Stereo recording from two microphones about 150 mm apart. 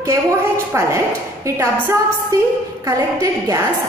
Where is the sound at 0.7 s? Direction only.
20° right (ahead or behind).